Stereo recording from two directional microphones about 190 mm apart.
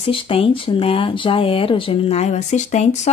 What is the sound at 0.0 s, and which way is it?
Speech, 30° left (ahead or behind).